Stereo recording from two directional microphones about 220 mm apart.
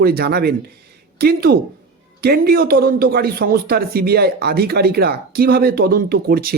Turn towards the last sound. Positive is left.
turn(degrees=-45)  # may be behind; listen again after turning